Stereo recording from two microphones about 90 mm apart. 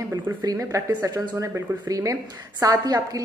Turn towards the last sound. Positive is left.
turn(degrees=-45)  # may be behind; listen again after turning